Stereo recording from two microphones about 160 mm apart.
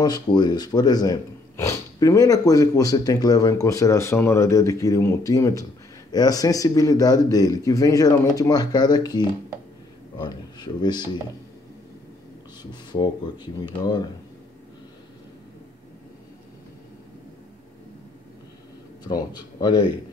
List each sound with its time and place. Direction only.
0.0 s speech: 25° left (ahead or behind)
12.9 s speech: 25° left (ahead or behind)
19.0 s speech: 25° left (ahead or behind)